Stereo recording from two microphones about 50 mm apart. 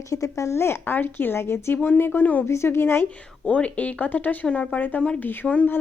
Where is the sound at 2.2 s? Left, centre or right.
Left.